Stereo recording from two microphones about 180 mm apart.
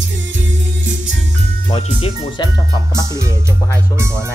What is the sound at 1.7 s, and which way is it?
Music, 30° left (ahead or behind).